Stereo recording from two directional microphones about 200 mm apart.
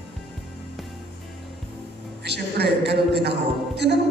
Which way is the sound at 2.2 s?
55° right (ahead or behind).